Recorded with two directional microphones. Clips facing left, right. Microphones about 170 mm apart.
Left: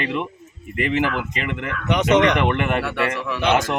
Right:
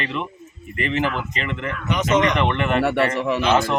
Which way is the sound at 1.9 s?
65° left (ahead or behind).